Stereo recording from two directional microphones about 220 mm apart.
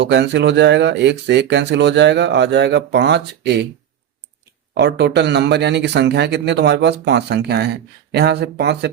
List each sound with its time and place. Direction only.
0.0 s speech: 50° right (ahead or behind)
4.7 s speech: 50° right (ahead or behind)